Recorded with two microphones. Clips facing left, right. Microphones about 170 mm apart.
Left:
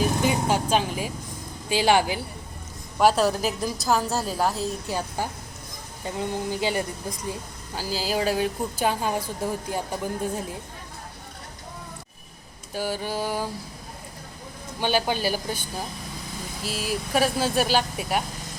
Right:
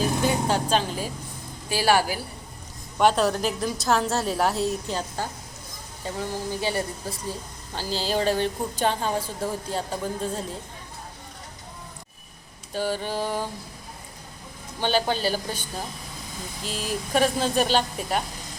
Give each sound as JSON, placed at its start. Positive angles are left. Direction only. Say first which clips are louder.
{"t": 0.3, "sound": "a woman's voice", "louder": "even", "side_deg": 10}
{"t": 3.0, "sound": "a woman's voice", "louder": "left 1 dB", "side_deg": 5}
{"t": 4.9, "sound": "speech", "louder": "left 1 dB", "side_deg": 10}
{"t": 12.7, "sound": "speech", "louder": "right 1 dB", "side_deg": 10}
{"t": 14.8, "sound": "speech", "louder": "even", "side_deg": 10}
{"t": 16.6, "sound": "speech", "louder": "left 1 dB", "side_deg": 5}